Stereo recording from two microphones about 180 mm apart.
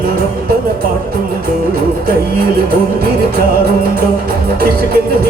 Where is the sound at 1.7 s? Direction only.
55° right (ahead or behind).